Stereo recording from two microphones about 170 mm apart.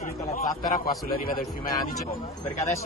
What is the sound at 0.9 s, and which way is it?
Speech, 60° left (ahead or behind).